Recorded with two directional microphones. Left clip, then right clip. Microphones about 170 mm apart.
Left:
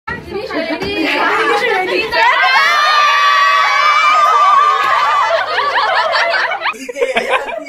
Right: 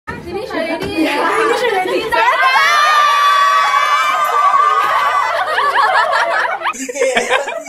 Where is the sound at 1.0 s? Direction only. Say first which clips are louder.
Left 1 dB; 60° right (ahead or behind).